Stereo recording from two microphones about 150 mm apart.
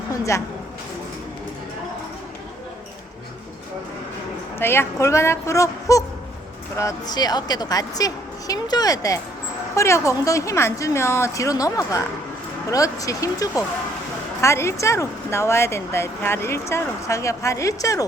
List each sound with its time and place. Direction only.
0.1 s a woman's voice: 20° left (ahead or behind)
4.6 s a woman's voice: 15° left (ahead or behind)